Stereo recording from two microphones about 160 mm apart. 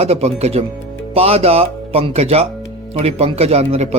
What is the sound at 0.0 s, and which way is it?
Speech, 40° right (ahead or behind).